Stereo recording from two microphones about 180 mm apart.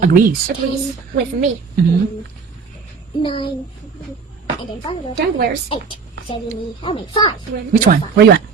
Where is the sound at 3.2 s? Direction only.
30° left (ahead or behind).